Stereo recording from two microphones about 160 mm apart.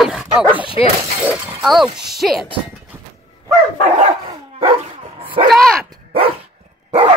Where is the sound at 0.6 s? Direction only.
35° left (ahead or behind).